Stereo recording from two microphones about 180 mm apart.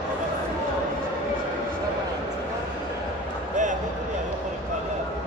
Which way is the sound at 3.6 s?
45° right (ahead or behind).